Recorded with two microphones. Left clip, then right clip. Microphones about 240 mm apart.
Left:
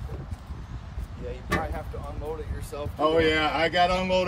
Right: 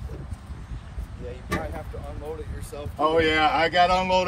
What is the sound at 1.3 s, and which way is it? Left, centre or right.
Speech, centre.